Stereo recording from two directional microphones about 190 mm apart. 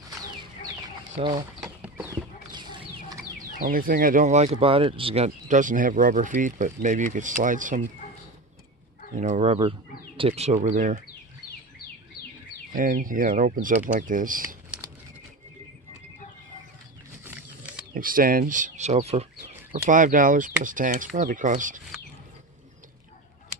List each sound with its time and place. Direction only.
1.2 s speech: 25° right (ahead or behind)
1.6 s a sound: 5° right (ahead or behind)
2.1 s horse: 25° right (ahead or behind)
3.6 s speech: 50° right (ahead or behind)
9.1 s speech: 40° right (ahead or behind)
12.7 s speech: 45° right (ahead or behind)
17.2 s wild animals: 10° right (ahead or behind)
17.9 s speech: 50° right (ahead or behind)
19.7 s speech: 45° right (ahead or behind)